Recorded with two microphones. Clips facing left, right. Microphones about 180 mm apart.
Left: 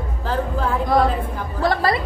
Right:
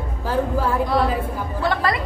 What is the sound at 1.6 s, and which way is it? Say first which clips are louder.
Speech: left 3 dB; 35° left (ahead or behind).